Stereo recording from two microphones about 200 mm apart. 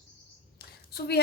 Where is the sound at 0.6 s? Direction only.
50° left (ahead or behind).